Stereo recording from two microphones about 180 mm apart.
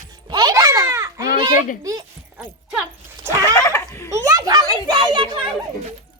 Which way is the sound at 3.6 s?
15° left (ahead or behind).